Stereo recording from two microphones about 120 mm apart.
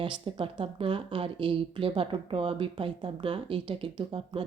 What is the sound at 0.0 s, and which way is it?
Speech, 45° right (ahead or behind).